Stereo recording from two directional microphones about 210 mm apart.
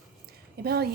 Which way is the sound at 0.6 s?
50° right (ahead or behind).